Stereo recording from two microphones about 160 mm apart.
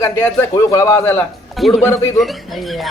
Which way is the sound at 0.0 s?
15° left (ahead or behind).